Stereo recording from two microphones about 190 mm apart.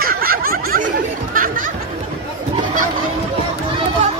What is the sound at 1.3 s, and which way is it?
Music, 45° right (ahead or behind).